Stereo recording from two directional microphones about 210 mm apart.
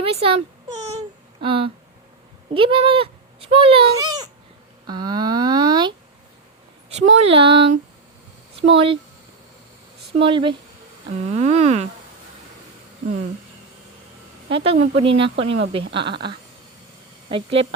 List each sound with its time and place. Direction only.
0.0 s a child's voice: 25° right (ahead or behind)
6.9 s speech: 30° right (ahead or behind)
8.7 s speech: 25° right (ahead or behind)
10.2 s speech: 25° right (ahead or behind)
14.5 s speech: 30° right (ahead or behind)
17.2 s speech: 25° right (ahead or behind)